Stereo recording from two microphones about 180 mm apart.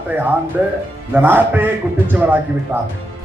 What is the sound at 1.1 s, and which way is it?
A man's voice, 10° right (ahead or behind).